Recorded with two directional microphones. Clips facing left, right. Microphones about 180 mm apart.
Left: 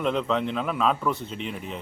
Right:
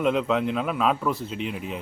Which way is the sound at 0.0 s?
5° right (ahead or behind).